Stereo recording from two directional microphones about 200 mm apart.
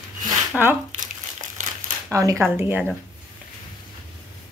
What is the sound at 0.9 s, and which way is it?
Crumpling, 40° right (ahead or behind).